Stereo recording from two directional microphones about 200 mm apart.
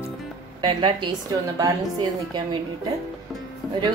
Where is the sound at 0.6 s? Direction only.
20° right (ahead or behind).